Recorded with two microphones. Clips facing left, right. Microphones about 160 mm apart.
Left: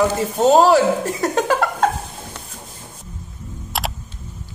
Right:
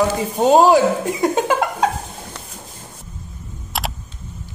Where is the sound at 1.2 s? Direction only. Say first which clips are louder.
Right 1 dB; 20° right (ahead or behind).